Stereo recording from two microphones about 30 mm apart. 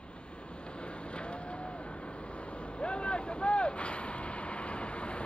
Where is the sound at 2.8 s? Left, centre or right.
Left.